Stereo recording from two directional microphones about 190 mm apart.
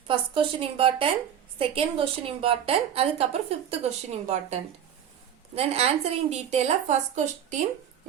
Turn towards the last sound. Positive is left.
turn(degrees=-40)  # may be behind; listen again after turning